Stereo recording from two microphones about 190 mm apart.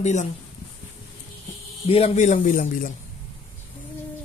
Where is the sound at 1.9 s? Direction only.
30° left (ahead or behind).